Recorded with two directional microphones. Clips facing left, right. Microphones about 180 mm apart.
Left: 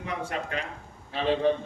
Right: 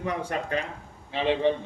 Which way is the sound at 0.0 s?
40° right (ahead or behind).